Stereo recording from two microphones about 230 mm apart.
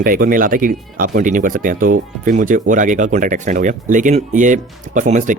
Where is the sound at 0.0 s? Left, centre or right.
Right.